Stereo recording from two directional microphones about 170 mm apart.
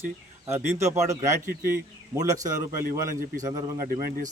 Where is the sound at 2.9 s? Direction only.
55° right (ahead or behind).